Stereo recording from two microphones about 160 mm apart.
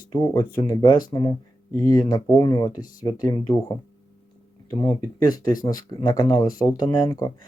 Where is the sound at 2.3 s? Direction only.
25° left (ahead or behind).